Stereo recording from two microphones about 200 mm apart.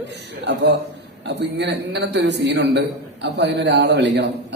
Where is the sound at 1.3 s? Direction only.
60° right (ahead or behind).